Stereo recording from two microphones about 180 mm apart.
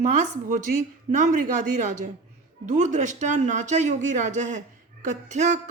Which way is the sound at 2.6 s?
40° right (ahead or behind).